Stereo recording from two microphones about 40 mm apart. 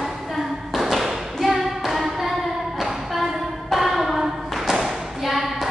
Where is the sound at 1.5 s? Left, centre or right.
Centre.